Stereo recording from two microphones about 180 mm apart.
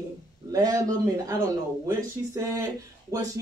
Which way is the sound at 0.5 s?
20° right (ahead or behind).